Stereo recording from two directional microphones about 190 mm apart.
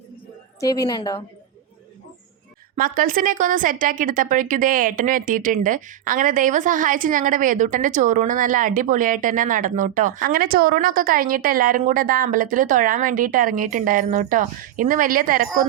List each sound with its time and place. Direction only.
0.6 s a woman's voice: 20° left (ahead or behind)
2.7 s speech: 50° right (ahead or behind)